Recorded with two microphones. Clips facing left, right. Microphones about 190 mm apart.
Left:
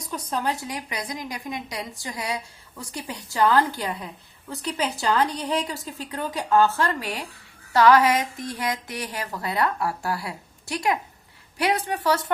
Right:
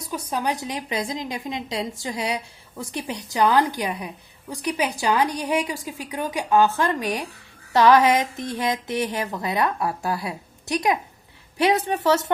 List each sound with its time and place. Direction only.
0.0 s a woman's voice: 10° right (ahead or behind); by 12.2 s 25° right (ahead or behind)